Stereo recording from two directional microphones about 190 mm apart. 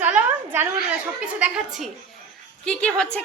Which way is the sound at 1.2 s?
5° right (ahead or behind).